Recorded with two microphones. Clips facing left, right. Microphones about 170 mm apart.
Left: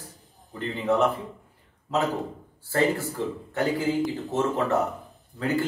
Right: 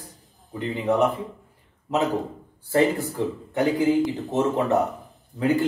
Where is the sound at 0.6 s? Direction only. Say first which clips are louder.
Right 2 dB; 15° right (ahead or behind).